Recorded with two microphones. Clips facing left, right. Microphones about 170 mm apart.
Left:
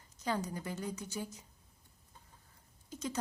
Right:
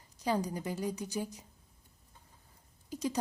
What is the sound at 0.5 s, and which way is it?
Speech, 15° right (ahead or behind).